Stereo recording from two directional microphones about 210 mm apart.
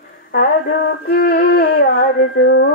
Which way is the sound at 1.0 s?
50° left (ahead or behind).